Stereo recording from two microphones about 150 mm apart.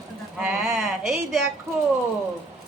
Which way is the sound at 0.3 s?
5° right (ahead or behind).